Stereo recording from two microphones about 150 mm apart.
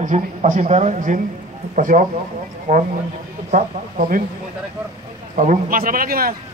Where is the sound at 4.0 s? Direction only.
70° right (ahead or behind).